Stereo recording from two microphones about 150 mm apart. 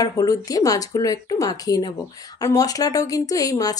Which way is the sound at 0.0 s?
25° left (ahead or behind).